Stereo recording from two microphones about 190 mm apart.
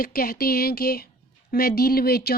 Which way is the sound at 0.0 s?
50° left (ahead or behind).